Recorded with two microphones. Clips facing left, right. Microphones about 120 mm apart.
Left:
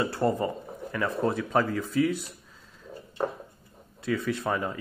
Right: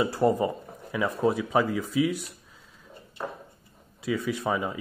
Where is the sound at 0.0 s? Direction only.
10° right (ahead or behind).